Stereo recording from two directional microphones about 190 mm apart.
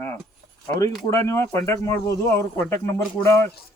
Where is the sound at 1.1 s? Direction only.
15° left (ahead or behind).